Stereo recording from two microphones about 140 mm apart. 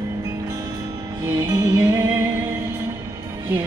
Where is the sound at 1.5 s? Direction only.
25° right (ahead or behind).